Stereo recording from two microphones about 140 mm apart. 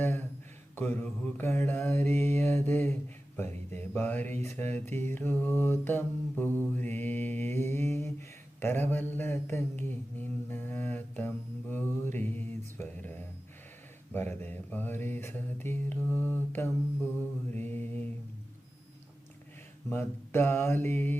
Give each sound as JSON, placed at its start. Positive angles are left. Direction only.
{"t": 0.0, "sound": "a sound", "side_deg": 15}
{"t": 0.8, "sound": "mantra", "side_deg": 15}
{"t": 19.9, "sound": "mantra", "side_deg": 15}